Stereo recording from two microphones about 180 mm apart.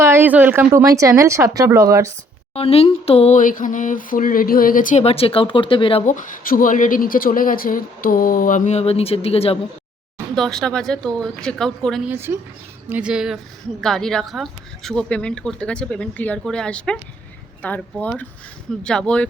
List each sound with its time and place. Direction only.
0.0 s speech: 15° right (ahead or behind)
2.6 s a sound: 35° left (ahead or behind)
6.1 s speech: 45° left (ahead or behind)
10.3 s speech: centre (ahead or behind)
12.1 s speech: 10° right (ahead or behind); by 19.3 s 5° left (ahead or behind)